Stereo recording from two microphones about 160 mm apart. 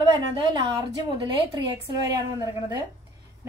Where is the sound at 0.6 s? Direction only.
25° right (ahead or behind).